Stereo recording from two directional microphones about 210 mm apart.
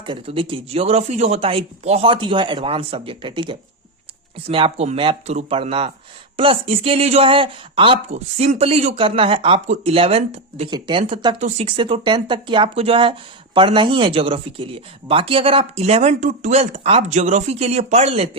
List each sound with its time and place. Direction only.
0.0 s speech: 25° right (ahead or behind)